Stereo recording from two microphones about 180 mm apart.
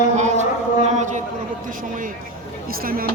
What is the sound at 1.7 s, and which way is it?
A man's voice, 50° right (ahead or behind).